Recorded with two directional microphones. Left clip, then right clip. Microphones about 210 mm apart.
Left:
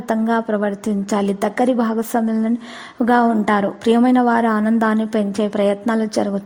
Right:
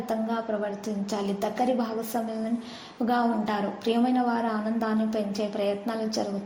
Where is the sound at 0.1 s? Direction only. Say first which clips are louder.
Left 11 dB; 45° left (ahead or behind).